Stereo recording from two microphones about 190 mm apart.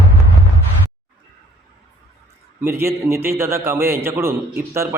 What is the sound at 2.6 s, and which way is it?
A man's voice, 10° right (ahead or behind).